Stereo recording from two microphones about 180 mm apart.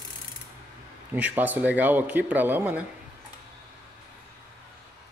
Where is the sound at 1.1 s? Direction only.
10° right (ahead or behind).